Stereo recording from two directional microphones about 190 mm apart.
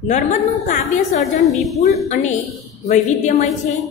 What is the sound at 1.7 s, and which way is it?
A woman's voice, 35° left (ahead or behind).